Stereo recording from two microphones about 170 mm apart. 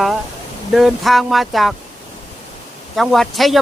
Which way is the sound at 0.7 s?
Centre (ahead or behind).